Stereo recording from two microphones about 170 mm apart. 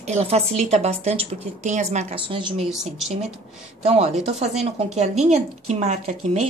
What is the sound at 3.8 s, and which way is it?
A woman's voice, 40° right (ahead or behind).